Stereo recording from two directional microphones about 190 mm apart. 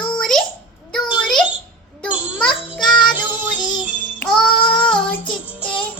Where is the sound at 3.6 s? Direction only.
20° left (ahead or behind).